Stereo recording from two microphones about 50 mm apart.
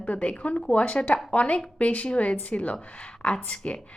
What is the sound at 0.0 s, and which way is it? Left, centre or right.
Speech, left.